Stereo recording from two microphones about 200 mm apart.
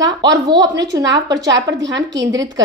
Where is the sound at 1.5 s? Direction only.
65° right (ahead or behind).